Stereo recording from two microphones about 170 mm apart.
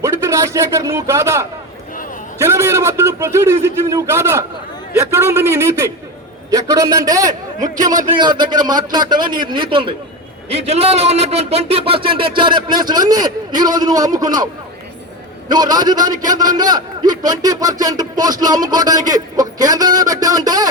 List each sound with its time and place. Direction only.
0.0 s a man's voice: 20° right (ahead or behind)
6.5 s a man's voice: 20° right (ahead or behind)
15.4 s a man's voice: 25° right (ahead or behind)